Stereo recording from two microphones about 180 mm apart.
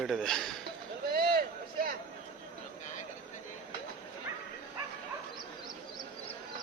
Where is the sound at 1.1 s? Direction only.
55° right (ahead or behind).